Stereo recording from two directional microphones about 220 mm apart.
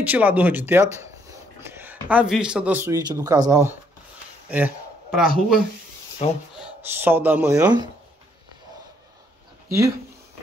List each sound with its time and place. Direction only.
0.0 s a man's voice: 5° right (ahead or behind)
6.1 s a sound: 25° left (ahead or behind)
6.6 s speech: 10° right (ahead or behind)